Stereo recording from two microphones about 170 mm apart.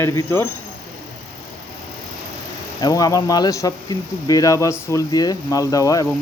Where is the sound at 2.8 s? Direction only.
20° left (ahead or behind).